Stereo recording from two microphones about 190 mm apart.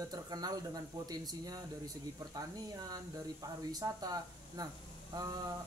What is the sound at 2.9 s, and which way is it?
Speech, 20° right (ahead or behind).